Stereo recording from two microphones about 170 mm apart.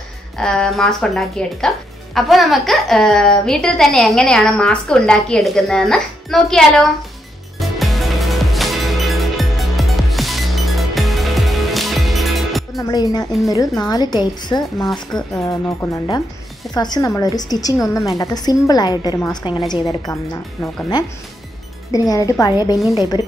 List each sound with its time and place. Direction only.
0.4 s a woman's voice: 5° left (ahead or behind)
7.5 s music: centre (ahead or behind)
12.7 s a woman's voice: 20° left (ahead or behind)
14.6 s a woman's voice: centre (ahead or behind)
15.3 s a woman's voice: 15° left (ahead or behind)
21.9 s a woman's voice: 20° left (ahead or behind)